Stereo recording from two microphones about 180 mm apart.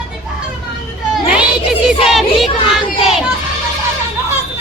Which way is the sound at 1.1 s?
5° right (ahead or behind).